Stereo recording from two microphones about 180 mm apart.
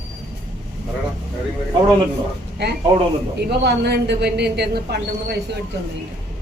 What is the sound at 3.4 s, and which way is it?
A man's voice, 65° right (ahead or behind).